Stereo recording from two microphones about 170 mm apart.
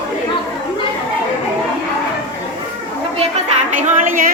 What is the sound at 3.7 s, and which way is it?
Speech, 50° right (ahead or behind).